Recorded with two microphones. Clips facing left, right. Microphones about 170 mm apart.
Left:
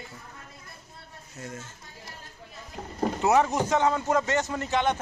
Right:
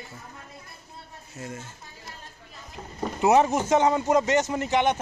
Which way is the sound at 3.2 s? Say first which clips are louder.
Right 3 dB; 20° right (ahead or behind).